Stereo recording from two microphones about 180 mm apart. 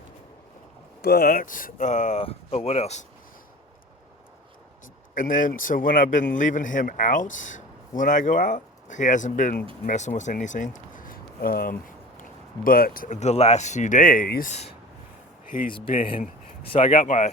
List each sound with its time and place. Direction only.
1.0 s a man's voice: 60° left (ahead or behind); by 3.0 s 35° left (ahead or behind)
5.1 s a man's voice: 45° left (ahead or behind)
15.4 s speech: 50° left (ahead or behind)
15.7 s speech: 30° left (ahead or behind)
17.0 s a man's voice: 45° left (ahead or behind)